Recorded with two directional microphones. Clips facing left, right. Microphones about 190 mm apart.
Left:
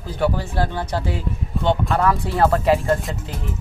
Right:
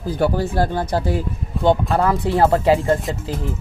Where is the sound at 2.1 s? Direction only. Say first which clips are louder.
Right 2 dB; 25° right (ahead or behind).